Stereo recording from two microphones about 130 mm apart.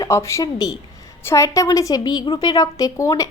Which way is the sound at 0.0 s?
20° left (ahead or behind).